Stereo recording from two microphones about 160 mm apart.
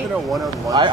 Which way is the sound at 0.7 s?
30° right (ahead or behind).